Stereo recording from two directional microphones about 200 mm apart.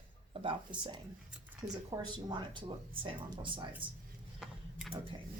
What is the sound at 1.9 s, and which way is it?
Speech, 20° right (ahead or behind).